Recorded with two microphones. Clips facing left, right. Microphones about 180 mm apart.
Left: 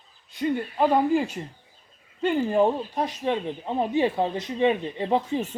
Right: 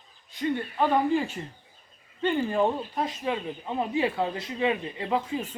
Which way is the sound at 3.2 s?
25° left (ahead or behind).